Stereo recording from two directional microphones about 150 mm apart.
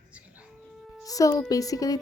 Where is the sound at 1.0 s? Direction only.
25° left (ahead or behind).